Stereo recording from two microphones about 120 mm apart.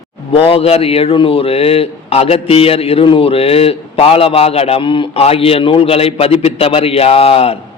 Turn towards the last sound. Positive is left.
turn(degrees=55)  # may be behind; listen again after turning